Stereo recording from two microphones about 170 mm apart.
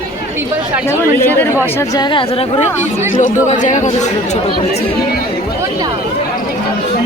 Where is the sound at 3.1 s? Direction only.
50° left (ahead or behind).